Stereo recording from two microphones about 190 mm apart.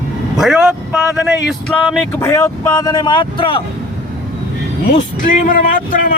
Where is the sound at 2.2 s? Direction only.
15° left (ahead or behind).